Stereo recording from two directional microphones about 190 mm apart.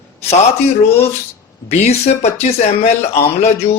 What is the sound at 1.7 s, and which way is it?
Speech, 35° left (ahead or behind).